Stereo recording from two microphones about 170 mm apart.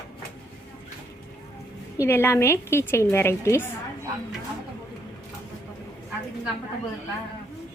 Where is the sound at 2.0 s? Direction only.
15° left (ahead or behind).